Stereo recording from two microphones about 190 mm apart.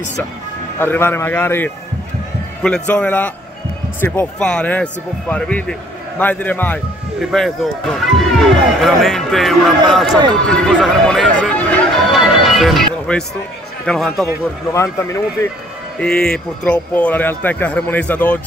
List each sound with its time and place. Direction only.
0.7 s speech: 10° left (ahead or behind)
10.3 s chatter: 5° left (ahead or behind)
13.8 s speech: centre (ahead or behind)
14.7 s speech: 15° left (ahead or behind)
16.0 s speech: 5° left (ahead or behind)